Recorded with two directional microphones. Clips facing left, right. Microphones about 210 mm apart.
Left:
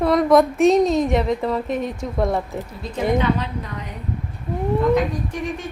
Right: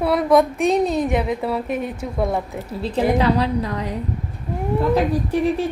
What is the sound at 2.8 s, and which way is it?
A woman's voice, 30° right (ahead or behind).